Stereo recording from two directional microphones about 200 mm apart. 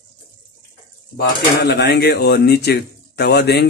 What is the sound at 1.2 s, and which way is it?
Speech, 55° left (ahead or behind).